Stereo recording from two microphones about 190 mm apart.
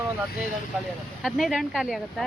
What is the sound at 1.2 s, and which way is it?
Speech, centre (ahead or behind).